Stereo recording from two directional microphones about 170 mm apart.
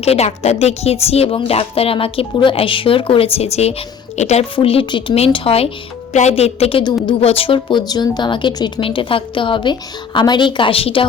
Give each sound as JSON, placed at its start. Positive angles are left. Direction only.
{"t": 0.0, "sound": "a woman's voice", "side_deg": 35}